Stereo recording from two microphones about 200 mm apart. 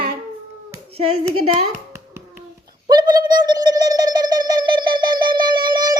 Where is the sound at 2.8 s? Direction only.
20° right (ahead or behind).